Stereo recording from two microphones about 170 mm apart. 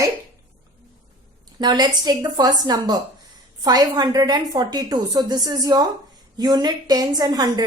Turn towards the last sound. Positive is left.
turn(degrees=-20)  # may be behind; listen again after turning